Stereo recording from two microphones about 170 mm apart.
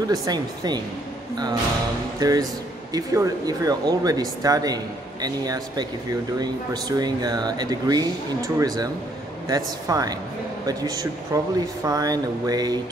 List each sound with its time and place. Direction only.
0.1 s speech: 20° right (ahead or behind)
2.1 s speech: 20° right (ahead or behind)